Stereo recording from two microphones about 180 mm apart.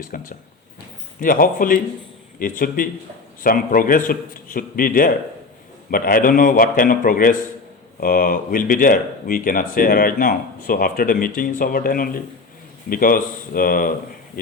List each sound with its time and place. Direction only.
0.1 s speech: 50° left (ahead or behind)